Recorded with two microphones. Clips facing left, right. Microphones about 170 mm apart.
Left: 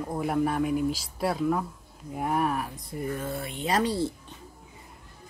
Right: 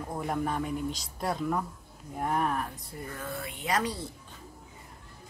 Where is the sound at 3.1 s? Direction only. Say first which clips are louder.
Left 5 dB; 20° left (ahead or behind).